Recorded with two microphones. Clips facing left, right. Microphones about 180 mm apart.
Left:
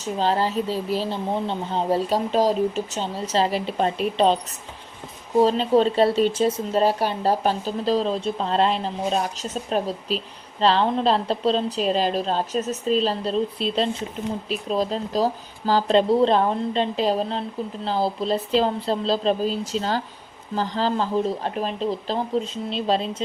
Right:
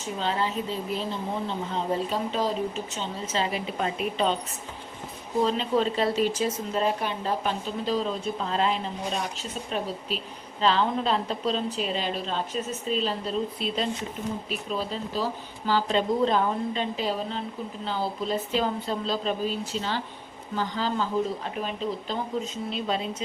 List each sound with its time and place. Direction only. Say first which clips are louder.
0.0 s speech: left 6 dB; 35° left (ahead or behind)
5.4 s speech: left 6 dB; 35° left (ahead or behind)